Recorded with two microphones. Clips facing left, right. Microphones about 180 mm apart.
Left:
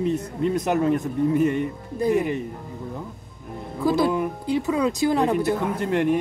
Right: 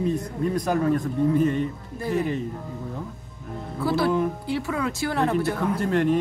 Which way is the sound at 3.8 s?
15° left (ahead or behind).